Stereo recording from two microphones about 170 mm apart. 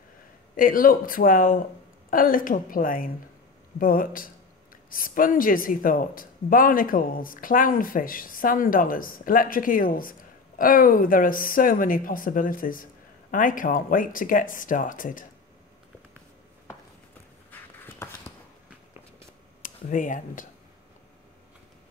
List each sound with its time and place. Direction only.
0.6 s speech: 55° left (ahead or behind)
17.5 s a sound: 10° left (ahead or behind)
19.6 s speech: 50° left (ahead or behind)